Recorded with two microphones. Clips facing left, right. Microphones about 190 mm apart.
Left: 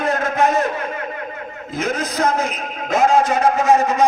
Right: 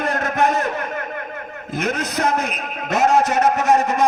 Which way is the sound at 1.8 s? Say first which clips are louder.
Left 1 dB; 65° right (ahead or behind).